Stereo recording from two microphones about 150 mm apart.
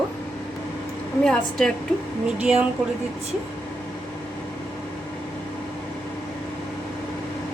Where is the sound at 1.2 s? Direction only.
5° left (ahead or behind).